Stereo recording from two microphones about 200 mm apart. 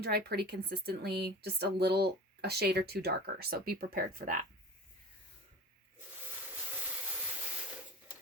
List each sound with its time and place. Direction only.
0.0 s a woman's voice: 50° right (ahead or behind)